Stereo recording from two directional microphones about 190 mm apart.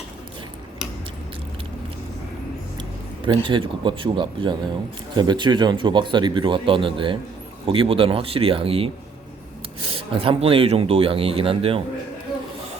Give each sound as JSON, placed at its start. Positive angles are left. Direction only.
{"t": 3.2, "sound": "speech", "side_deg": -25}